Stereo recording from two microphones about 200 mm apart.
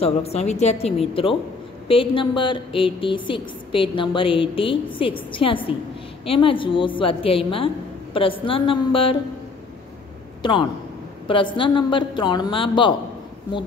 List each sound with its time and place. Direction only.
0.0 s a woman's voice: 30° left (ahead or behind)
10.4 s a woman's voice: 25° left (ahead or behind)